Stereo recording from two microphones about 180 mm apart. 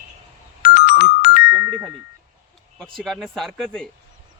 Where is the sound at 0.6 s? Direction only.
60° left (ahead or behind).